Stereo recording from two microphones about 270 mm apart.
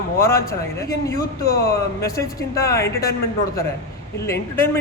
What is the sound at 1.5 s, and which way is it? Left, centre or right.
Speech, left.